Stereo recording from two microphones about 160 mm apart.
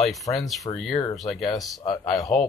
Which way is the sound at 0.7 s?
25° left (ahead or behind).